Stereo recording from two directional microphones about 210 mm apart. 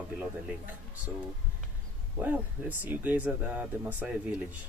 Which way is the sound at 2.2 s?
10° right (ahead or behind).